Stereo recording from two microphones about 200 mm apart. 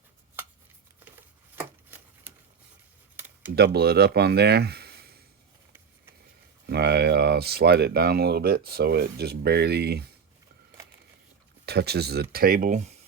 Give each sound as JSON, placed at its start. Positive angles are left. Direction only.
{"t": 1.5, "sound": "a sound", "side_deg": -10}
{"t": 3.5, "sound": "speech", "side_deg": -55}
{"t": 6.7, "sound": "speech", "side_deg": -55}
{"t": 11.6, "sound": "speech", "side_deg": -55}